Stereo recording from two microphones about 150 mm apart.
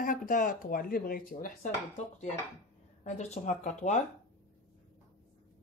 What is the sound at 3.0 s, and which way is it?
Speech, 50° left (ahead or behind).